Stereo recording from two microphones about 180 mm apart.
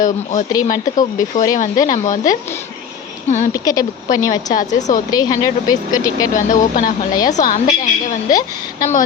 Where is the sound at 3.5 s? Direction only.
20° left (ahead or behind).